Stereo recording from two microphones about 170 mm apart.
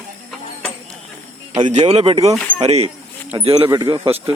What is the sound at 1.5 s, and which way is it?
Speech, 30° right (ahead or behind).